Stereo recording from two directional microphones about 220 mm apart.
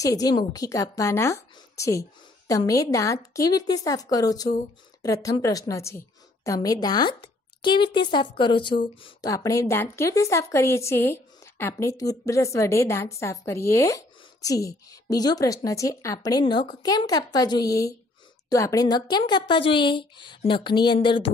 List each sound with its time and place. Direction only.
0.0 s a woman's voice: 15° left (ahead or behind)